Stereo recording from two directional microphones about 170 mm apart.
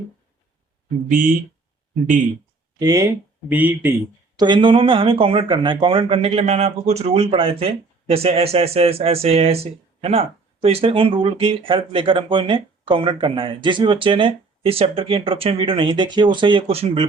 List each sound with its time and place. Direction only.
2.7 s speech: 20° right (ahead or behind)
3.5 s speech: 10° right (ahead or behind)
4.4 s speech: 25° right (ahead or behind)